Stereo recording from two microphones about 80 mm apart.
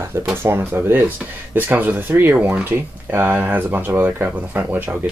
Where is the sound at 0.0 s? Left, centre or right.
Right.